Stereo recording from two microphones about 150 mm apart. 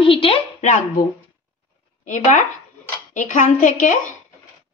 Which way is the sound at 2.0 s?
60° left (ahead or behind).